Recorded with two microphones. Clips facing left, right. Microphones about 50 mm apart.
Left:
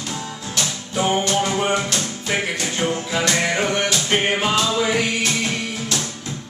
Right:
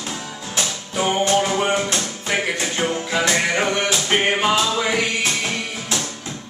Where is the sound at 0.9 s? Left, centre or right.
Centre.